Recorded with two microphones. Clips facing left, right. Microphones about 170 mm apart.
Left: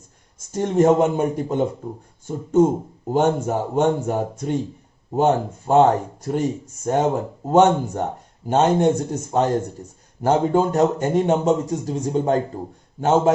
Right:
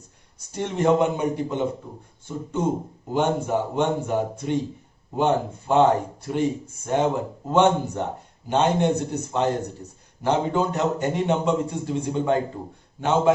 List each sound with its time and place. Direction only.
0.3 s a man's voice: 45° left (ahead or behind)
6.8 s a man's voice: 45° left (ahead or behind)